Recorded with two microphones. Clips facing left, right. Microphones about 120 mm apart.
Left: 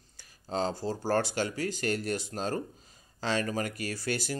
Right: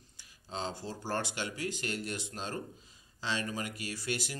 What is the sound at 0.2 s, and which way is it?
Speech, 40° left (ahead or behind).